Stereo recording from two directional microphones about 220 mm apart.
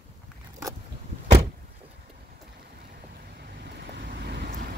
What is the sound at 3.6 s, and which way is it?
Vehicle, 45° right (ahead or behind).